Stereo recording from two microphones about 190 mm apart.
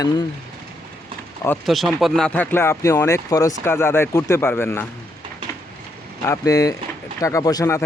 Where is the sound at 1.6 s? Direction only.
Centre (ahead or behind).